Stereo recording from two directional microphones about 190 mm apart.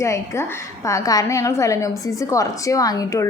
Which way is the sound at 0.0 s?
15° left (ahead or behind).